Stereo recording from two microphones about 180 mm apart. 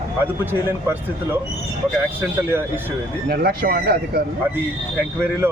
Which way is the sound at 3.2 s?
60° right (ahead or behind).